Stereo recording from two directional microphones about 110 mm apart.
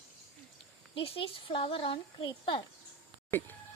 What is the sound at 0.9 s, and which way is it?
Speech, 55° left (ahead or behind).